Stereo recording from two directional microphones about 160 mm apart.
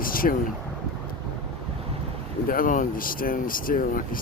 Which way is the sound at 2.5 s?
60° left (ahead or behind).